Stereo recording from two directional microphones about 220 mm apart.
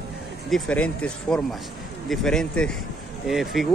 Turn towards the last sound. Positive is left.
turn(degrees=0)  # may be behind; listen again after turning